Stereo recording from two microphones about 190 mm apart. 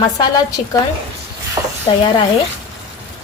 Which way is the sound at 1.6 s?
20° right (ahead or behind).